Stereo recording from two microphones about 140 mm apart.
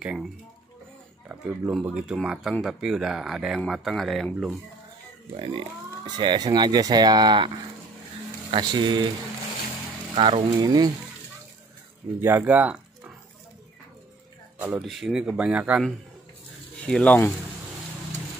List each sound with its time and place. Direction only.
0.0 s speech: 10° right (ahead or behind)
1.7 s speech: 5° right (ahead or behind)
5.3 s speech: 40° right (ahead or behind)
10.1 s speech: 40° right (ahead or behind)
12.2 s speech: 15° right (ahead or behind)
14.8 s speech: centre (ahead or behind)
16.8 s speech: 5° left (ahead or behind)